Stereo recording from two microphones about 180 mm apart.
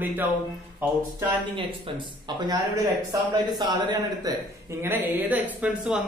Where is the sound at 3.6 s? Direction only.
25° right (ahead or behind).